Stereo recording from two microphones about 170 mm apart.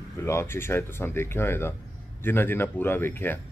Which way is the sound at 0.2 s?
15° left (ahead or behind).